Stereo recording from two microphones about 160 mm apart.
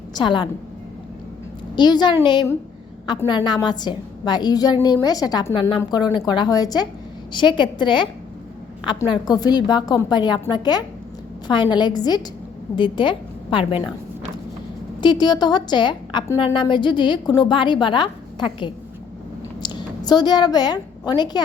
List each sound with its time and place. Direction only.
0.2 s a woman's voice: 30° left (ahead or behind)
1.7 s a woman's voice: 25° left (ahead or behind)
3.2 s a woman's voice: 30° left (ahead or behind)
9.2 s a woman's voice: 25° left (ahead or behind)
15.0 s a woman's voice: 25° left (ahead or behind)